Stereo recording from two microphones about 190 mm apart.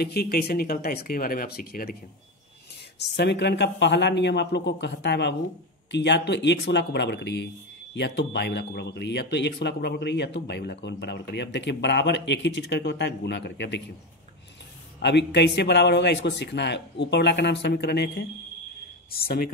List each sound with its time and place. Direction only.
0.0 s speech: 55° left (ahead or behind)
3.0 s speech: 65° left (ahead or behind)
15.0 s speech: 65° left (ahead or behind)